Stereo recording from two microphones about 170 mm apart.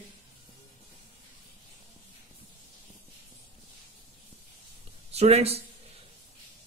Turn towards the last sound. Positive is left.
turn(degrees=-35)  # may be behind; listen again after turning